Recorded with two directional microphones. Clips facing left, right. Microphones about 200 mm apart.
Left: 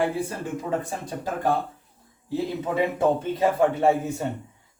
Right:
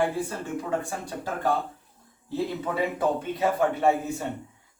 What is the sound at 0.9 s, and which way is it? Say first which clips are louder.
Speech: left 2 dB; 20° left (ahead or behind).